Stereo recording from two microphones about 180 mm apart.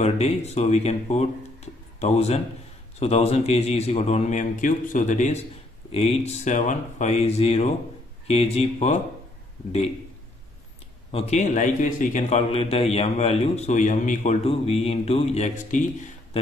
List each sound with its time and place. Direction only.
0.0 s a man's voice: 35° left (ahead or behind)
11.1 s a man's voice: 35° left (ahead or behind)
13.7 s a man's voice: 45° left (ahead or behind)